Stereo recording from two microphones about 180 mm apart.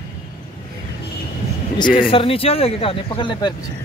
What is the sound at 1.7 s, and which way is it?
Speech, 25° left (ahead or behind).